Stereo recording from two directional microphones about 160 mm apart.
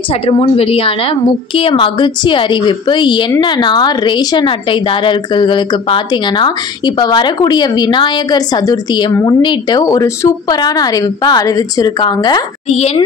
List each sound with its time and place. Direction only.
0.3 s a woman's voice: 35° left (ahead or behind)
12.6 s a woman's voice: 40° left (ahead or behind)